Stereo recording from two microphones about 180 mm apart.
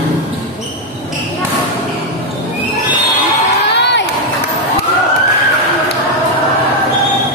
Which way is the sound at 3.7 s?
75° left (ahead or behind).